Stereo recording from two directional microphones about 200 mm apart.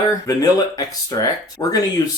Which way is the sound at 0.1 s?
20° left (ahead or behind).